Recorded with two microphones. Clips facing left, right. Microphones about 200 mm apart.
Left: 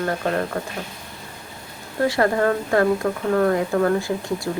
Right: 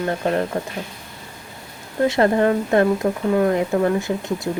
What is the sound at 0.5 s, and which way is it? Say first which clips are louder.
Speech: right 2 dB; 20° right (ahead or behind).